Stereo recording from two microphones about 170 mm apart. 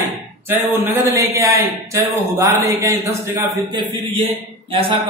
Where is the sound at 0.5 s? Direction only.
10° right (ahead or behind).